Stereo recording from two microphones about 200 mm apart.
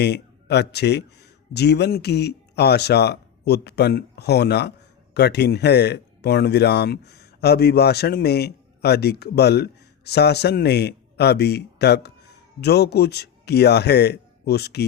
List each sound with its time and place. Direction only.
0.0 s speech: 55° left (ahead or behind)